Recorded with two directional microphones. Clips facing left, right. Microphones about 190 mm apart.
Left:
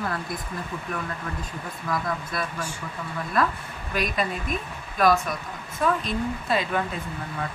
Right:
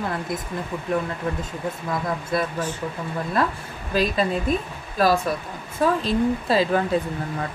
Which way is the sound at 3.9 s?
30° right (ahead or behind).